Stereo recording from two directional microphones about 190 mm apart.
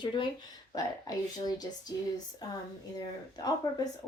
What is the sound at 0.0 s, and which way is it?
Speech, 25° left (ahead or behind).